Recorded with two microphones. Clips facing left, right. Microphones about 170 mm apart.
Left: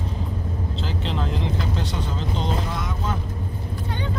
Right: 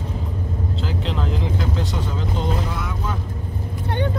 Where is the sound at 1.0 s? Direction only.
Centre (ahead or behind).